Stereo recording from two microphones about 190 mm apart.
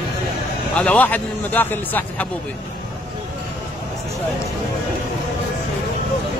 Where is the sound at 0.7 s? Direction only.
5° left (ahead or behind).